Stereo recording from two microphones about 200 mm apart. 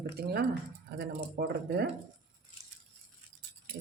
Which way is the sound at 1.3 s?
55° right (ahead or behind).